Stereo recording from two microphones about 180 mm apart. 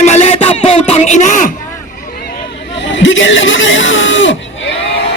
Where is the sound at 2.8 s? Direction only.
90° left.